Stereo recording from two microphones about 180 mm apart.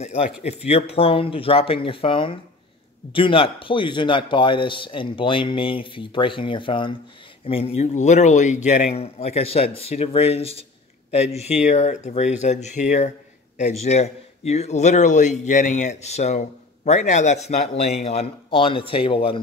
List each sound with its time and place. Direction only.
0.0 s a man's voice: 35° left (ahead or behind)